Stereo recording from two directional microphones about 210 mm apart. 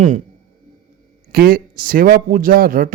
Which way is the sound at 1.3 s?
45° right (ahead or behind).